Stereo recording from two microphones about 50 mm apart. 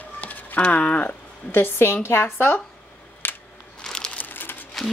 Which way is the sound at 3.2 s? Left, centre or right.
Left.